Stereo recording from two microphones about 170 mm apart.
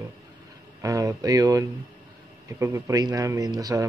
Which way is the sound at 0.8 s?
20° right (ahead or behind).